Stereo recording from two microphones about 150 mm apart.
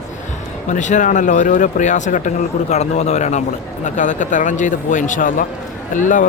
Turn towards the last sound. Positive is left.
turn(degrees=60)  # may be behind; listen again after turning